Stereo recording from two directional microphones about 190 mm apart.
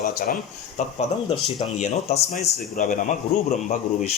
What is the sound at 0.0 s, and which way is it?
Speech, 50° left (ahead or behind).